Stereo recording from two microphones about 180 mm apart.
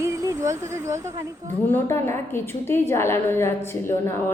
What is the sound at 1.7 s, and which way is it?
A woman's voice, 15° left (ahead or behind).